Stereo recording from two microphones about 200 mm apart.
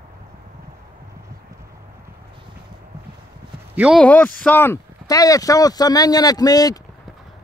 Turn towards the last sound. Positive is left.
turn(degrees=20)  # may be behind; listen again after turning